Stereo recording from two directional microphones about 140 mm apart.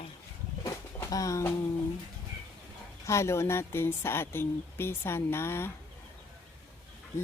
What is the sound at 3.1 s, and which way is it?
Speech, 20° left (ahead or behind).